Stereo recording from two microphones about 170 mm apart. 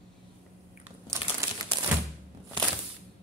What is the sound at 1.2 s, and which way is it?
Crumpling, 35° left (ahead or behind).